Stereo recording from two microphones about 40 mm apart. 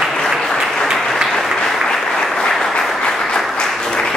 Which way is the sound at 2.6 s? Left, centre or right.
Centre.